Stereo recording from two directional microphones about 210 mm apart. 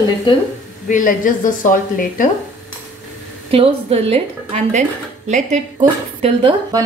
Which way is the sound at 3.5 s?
30° right (ahead or behind).